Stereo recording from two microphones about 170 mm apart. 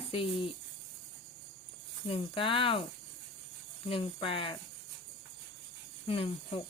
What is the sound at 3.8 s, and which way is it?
Speech, 30° left (ahead or behind).